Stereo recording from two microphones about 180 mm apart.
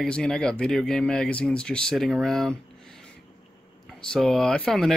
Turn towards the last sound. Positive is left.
turn(degrees=0)  # may be behind; listen again after turning